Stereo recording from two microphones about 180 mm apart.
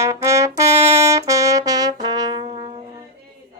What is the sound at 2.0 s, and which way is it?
Brass instrument, 20° right (ahead or behind).